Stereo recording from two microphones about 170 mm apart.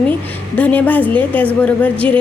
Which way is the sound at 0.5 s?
10° left (ahead or behind).